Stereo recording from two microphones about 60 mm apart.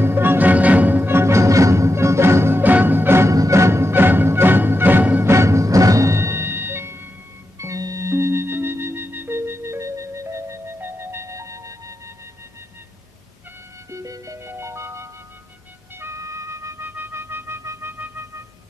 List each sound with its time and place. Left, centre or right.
0.0 s music: right
2.6 s music: right
3.3 s music: right
5.2 s music: right
7.5 s organ: right
8.0 s music: right
10.8 s music: right
13.8 s music: right
14.4 s music: right
16.8 s music: right